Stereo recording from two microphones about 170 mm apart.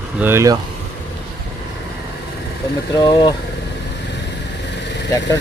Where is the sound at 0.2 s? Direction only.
15° right (ahead or behind).